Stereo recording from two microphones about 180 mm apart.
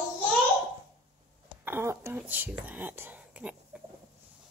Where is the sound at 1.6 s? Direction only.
15° right (ahead or behind).